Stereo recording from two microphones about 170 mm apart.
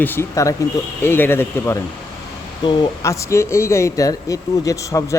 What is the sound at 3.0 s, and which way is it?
Speech, 15° left (ahead or behind).